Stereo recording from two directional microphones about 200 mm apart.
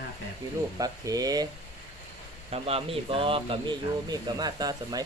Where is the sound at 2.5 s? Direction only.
30° right (ahead or behind).